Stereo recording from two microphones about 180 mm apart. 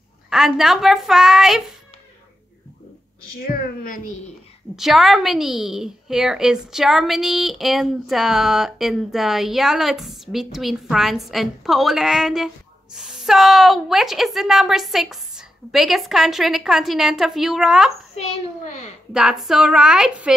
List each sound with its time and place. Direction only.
0.3 s speech: centre (ahead or behind)
3.3 s speech: 50° left (ahead or behind)
4.7 s speech: centre (ahead or behind)
18.1 s a child's voice: 40° left (ahead or behind)
19.1 s speech: centre (ahead or behind)